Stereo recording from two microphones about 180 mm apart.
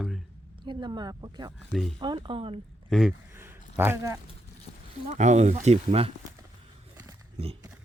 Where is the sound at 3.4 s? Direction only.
10° right (ahead or behind).